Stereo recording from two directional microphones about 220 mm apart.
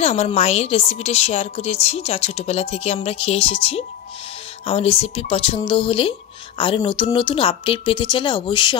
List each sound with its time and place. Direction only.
0.0 s a woman's voice: 30° left (ahead or behind)